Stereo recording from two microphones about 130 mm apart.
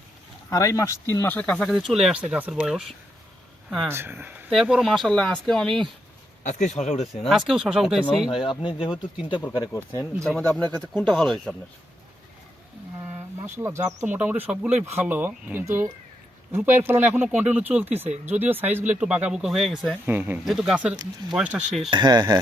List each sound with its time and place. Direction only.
0.5 s speech: 25° left (ahead or behind)
1.4 s speech: 5° left (ahead or behind)
3.8 s speech: 20° right (ahead or behind)
4.5 s speech: centre (ahead or behind)
6.4 s speech: 65° left (ahead or behind)
7.3 s speech: centre (ahead or behind)
8.4 s speech: 40° left (ahead or behind)
9.7 s speech: 15° left (ahead or behind)
10.2 s speech: 5° left (ahead or behind)
13.0 s a sound: 20° right (ahead or behind)
14.0 s speech: 15° right (ahead or behind)
20.1 s speech: 15° right (ahead or behind)
20.4 s speech: centre (ahead or behind)
21.8 s speech: 35° right (ahead or behind)